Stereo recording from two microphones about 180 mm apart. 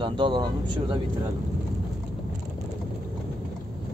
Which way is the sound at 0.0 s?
25° right (ahead or behind).